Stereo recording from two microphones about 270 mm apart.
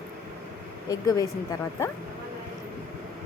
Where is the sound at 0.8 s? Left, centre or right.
Centre.